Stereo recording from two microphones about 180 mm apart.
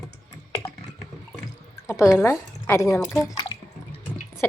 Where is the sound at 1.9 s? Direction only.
15° left (ahead or behind).